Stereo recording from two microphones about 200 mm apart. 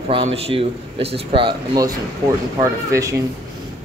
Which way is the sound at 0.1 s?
30° right (ahead or behind).